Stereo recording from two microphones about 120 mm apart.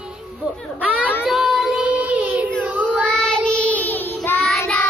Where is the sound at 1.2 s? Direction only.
5° right (ahead or behind).